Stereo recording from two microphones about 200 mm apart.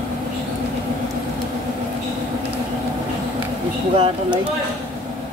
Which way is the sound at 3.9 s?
30° right (ahead or behind).